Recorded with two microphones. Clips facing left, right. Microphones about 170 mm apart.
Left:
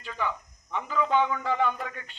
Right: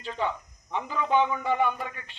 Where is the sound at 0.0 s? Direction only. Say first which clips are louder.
Right 2 dB; 25° right (ahead or behind).